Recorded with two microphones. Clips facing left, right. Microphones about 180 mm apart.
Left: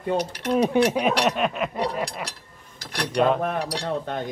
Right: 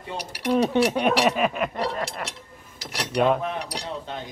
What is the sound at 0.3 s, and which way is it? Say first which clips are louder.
Speech: right 4 dB; 10° right (ahead or behind).